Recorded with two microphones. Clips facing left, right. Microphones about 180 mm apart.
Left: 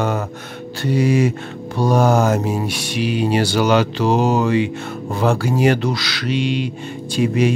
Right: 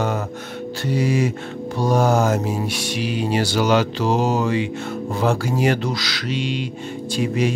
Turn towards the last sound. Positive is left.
turn(degrees=65)  # may be behind; listen again after turning